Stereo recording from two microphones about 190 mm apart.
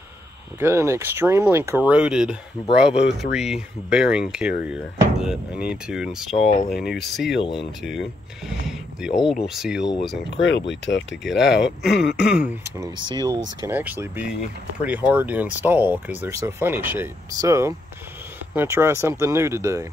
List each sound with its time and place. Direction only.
0.6 s speech: 15° right (ahead or behind)
6.3 s speech: 40° left (ahead or behind)
6.7 s speech: centre (ahead or behind)
10.3 s speech: 70° left (ahead or behind)
11.6 s speech: centre (ahead or behind)
12.6 s speech: 15° right (ahead or behind)